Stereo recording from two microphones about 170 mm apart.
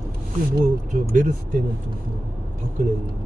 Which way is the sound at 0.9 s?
50° right (ahead or behind).